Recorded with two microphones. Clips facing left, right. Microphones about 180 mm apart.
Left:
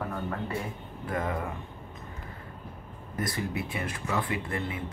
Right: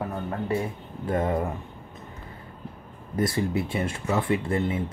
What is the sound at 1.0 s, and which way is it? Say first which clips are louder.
Speech: right 6 dB; 30° right (ahead or behind).